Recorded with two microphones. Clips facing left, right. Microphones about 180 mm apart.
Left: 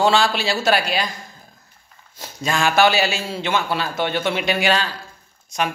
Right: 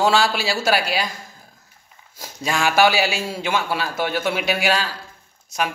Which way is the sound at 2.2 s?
10° right (ahead or behind).